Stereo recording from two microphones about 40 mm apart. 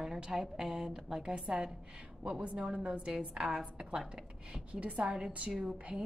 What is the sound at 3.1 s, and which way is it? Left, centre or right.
A woman's voice, right.